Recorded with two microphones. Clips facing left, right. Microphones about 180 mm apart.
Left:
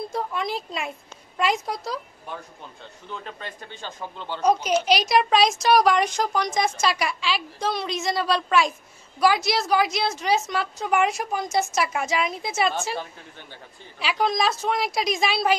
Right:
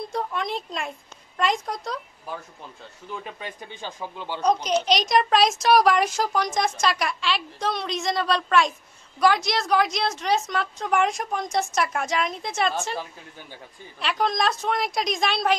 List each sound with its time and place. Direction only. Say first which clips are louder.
0.1 s a child's voice: right 2 dB; centre (ahead or behind)
2.8 s speech: right 1 dB; 10° right (ahead or behind)
4.6 s a child's voice: left 1 dB; 5° left (ahead or behind)